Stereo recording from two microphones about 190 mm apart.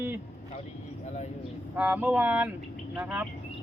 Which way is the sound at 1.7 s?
10° right (ahead or behind).